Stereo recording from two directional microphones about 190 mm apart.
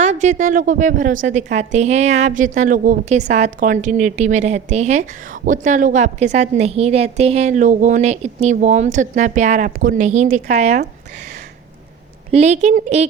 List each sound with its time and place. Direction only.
0.0 s a woman's voice: 35° right (ahead or behind)
12.3 s a woman's voice: 35° right (ahead or behind)